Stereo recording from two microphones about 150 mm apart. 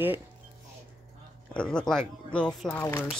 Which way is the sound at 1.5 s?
5° left (ahead or behind).